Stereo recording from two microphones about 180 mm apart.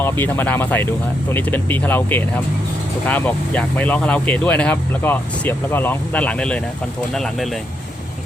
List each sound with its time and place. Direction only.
0.0 s speech: 10° left (ahead or behind)